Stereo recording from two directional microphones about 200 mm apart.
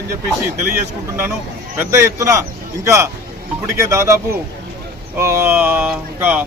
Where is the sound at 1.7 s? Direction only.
15° right (ahead or behind).